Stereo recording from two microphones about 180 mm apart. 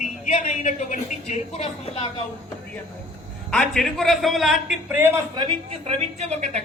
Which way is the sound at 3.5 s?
5° left (ahead or behind).